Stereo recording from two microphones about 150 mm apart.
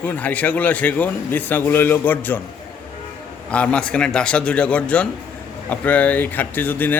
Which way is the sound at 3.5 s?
10° left (ahead or behind).